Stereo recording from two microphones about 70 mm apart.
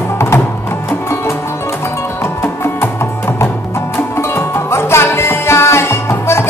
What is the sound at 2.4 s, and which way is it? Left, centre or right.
Music, left.